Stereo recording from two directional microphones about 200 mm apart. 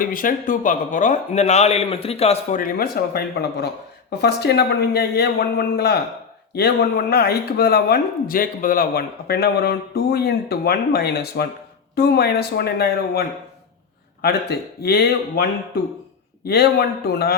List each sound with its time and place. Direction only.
0.0 s a man's voice: 45° left (ahead or behind)
2.6 s speech: 45° left (ahead or behind)